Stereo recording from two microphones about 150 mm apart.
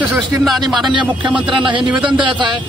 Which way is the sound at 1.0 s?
30° right (ahead or behind).